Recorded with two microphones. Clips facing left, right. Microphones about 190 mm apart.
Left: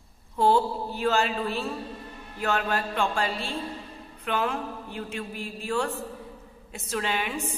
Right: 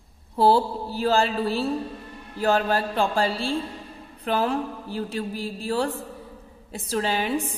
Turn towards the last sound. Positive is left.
turn(degrees=-35)  # may be behind; listen again after turning